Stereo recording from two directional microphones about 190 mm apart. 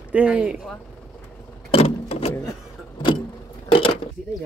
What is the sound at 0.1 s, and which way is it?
Speech, 5° right (ahead or behind).